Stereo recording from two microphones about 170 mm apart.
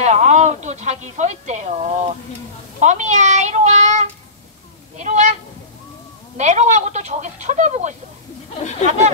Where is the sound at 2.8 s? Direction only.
45° right (ahead or behind).